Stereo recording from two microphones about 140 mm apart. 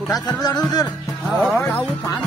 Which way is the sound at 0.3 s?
30° left (ahead or behind).